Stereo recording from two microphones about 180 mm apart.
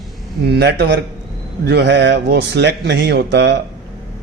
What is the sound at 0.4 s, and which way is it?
A man's voice, 65° right (ahead or behind).